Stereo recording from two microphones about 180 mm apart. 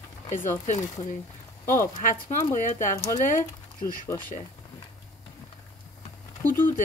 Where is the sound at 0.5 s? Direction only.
40° left (ahead or behind).